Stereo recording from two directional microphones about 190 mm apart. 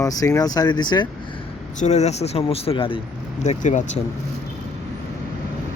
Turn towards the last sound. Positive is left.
turn(degrees=40)  # may be behind; listen again after turning